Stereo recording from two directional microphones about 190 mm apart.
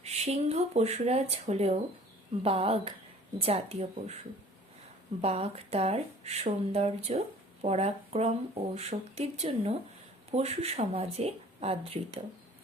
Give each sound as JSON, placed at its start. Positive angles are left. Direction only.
{"t": 0.0, "sound": "speech", "side_deg": -35}
{"t": 5.2, "sound": "speech", "side_deg": -35}